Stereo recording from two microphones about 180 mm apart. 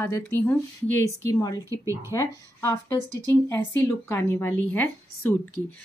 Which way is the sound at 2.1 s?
20° left (ahead or behind).